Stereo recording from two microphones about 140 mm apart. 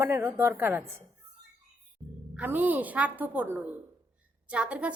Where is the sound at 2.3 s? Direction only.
10° right (ahead or behind).